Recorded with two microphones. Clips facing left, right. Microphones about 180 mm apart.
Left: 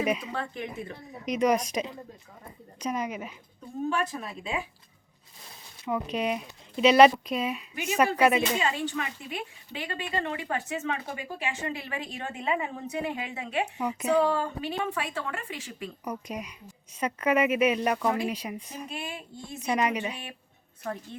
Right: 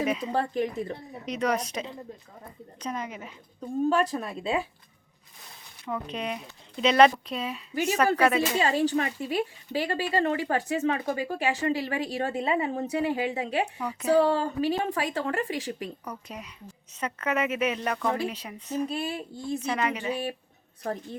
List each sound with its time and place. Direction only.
0.2 s speech: 35° right (ahead or behind)
1.3 s speech: 10° left (ahead or behind)
3.8 s speech: 35° right (ahead or behind)
5.8 s speech: 10° left (ahead or behind)
8.4 s speech: 35° right (ahead or behind)
13.7 s speech: 15° left (ahead or behind)
14.1 s speech: 30° right (ahead or behind)
16.0 s speech: 15° left (ahead or behind)
18.8 s speech: 35° right (ahead or behind)
19.6 s speech: 15° left (ahead or behind)